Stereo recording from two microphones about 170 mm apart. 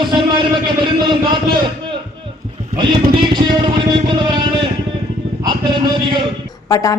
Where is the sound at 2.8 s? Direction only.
25° right (ahead or behind).